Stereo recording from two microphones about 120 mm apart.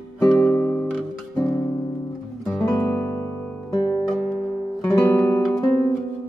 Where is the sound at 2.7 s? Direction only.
30° left (ahead or behind).